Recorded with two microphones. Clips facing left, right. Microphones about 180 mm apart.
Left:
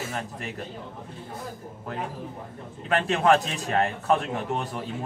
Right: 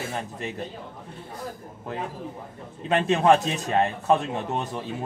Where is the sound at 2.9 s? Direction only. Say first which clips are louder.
Right 2 dB; 20° right (ahead or behind).